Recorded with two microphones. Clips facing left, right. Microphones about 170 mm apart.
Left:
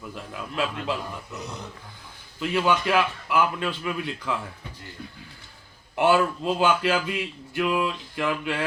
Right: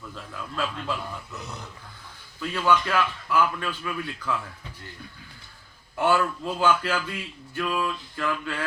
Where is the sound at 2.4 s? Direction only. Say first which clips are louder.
Left 1 dB; 20° left (ahead or behind).